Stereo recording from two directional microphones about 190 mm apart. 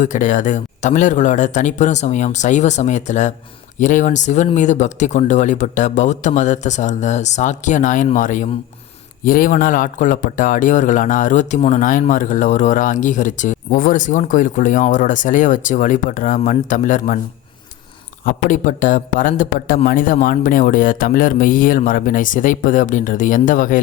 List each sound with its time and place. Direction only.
0.0 s speech: 40° left (ahead or behind)
18.3 s speech: 40° left (ahead or behind)